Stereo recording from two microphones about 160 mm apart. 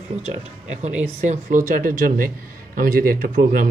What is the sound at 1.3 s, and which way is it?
Speech, 55° right (ahead or behind).